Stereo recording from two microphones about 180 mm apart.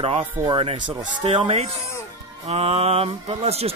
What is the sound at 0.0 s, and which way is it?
Speech, 30° right (ahead or behind).